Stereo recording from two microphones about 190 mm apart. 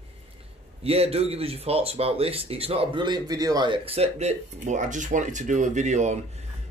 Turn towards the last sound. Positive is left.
turn(degrees=-35)  # may be behind; listen again after turning